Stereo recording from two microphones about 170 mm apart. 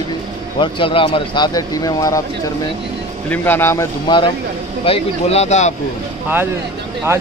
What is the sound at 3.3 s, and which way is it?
Speech, 10° left (ahead or behind).